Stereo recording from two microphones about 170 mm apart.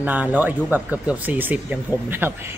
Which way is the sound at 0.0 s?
10° right (ahead or behind).